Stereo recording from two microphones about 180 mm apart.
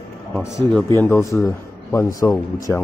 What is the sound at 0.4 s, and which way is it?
A man's voice, 15° left (ahead or behind).